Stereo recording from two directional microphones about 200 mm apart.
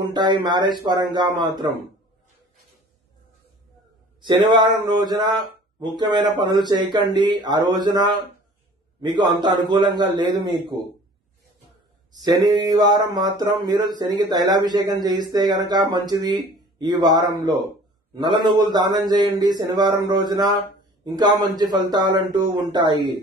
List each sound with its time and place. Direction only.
0.0 s speech: 20° right (ahead or behind)
4.2 s speech: 20° right (ahead or behind)
12.2 s speech: 20° right (ahead or behind)